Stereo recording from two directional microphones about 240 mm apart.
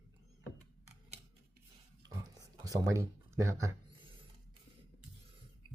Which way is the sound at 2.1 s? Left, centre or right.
Centre.